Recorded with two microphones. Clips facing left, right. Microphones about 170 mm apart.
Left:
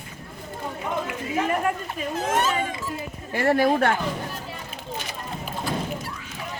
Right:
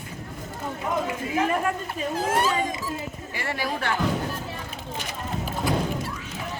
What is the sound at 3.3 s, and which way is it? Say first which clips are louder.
Speech: left 11 dB; 55° left (ahead or behind).